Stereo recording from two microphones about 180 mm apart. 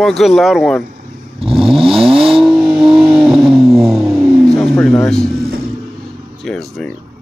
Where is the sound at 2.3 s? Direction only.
Centre (ahead or behind).